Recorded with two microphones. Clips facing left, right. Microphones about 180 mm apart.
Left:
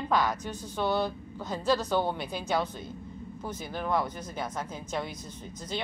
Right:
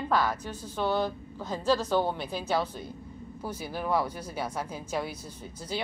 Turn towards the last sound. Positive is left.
turn(degrees=-10)  # may be behind; listen again after turning